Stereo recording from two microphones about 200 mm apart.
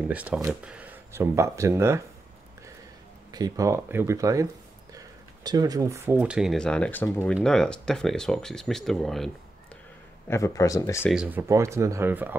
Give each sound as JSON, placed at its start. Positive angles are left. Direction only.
{"t": 0.1, "sound": "speech", "side_deg": -5}
{"t": 3.3, "sound": "speech", "side_deg": -20}
{"t": 10.2, "sound": "speech", "side_deg": 15}
{"t": 11.1, "sound": "speech", "side_deg": -5}